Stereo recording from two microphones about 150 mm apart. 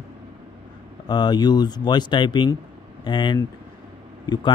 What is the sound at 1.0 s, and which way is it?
Speech, 30° left (ahead or behind).